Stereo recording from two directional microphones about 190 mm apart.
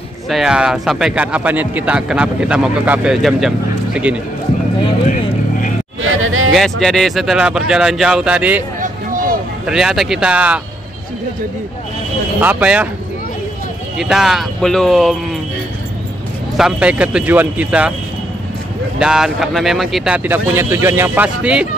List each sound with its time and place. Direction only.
0.3 s speech: 5° right (ahead or behind)
6.0 s music: 90° right
6.5 s speech: centre (ahead or behind)
8.8 s a sound: 45° right (ahead or behind)
9.7 s speech: 5° right (ahead or behind)
12.4 s speech: 10° right (ahead or behind)
13.9 s speech: centre (ahead or behind)
16.5 s speech: 5° right (ahead or behind)
18.9 s speech: 5° right (ahead or behind)
20.2 s speech: 10° right (ahead or behind)